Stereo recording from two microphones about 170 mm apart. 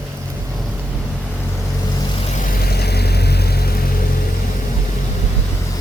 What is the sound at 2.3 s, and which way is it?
Vehicle, 50° left (ahead or behind).